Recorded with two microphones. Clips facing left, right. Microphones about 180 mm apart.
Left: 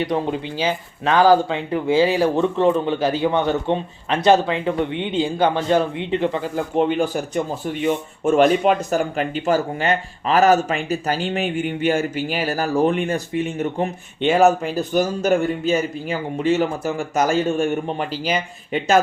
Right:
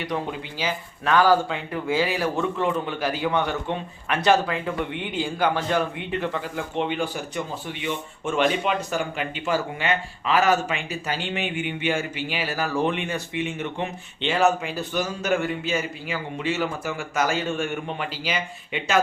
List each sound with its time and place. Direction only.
0.1 s speech: 30° left (ahead or behind)
6.7 s speech: 45° left (ahead or behind)